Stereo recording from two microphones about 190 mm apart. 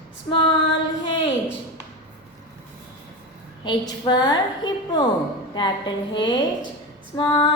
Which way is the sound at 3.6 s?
20° left (ahead or behind).